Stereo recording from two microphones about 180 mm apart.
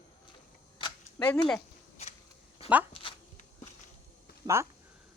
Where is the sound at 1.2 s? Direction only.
5° left (ahead or behind).